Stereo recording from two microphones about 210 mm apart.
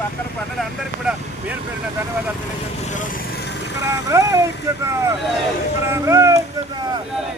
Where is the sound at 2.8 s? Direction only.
35° left (ahead or behind); by 3.8 s 55° left (ahead or behind).